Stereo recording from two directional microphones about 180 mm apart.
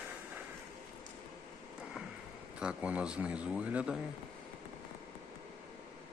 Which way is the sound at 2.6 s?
5° right (ahead or behind).